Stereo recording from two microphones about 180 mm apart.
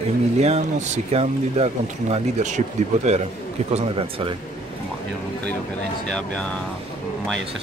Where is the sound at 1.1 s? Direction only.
35° right (ahead or behind).